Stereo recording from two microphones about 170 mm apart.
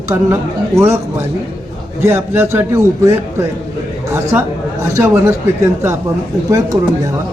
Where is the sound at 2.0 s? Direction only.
15° right (ahead or behind).